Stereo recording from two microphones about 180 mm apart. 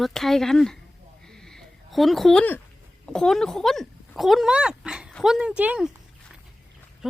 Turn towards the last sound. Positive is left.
turn(degrees=-5)  # may be behind; listen again after turning